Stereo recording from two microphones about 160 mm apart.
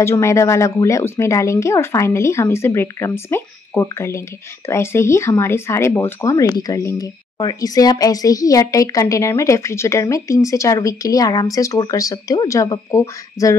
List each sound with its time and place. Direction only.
0.0 s speech: 15° left (ahead or behind)